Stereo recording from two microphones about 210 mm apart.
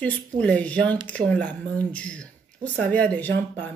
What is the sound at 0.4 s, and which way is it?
Speech, 5° left (ahead or behind).